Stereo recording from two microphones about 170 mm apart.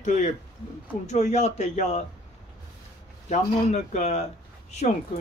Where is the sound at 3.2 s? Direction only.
40° left (ahead or behind).